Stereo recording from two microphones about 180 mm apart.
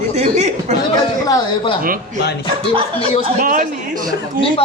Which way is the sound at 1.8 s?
50° right (ahead or behind).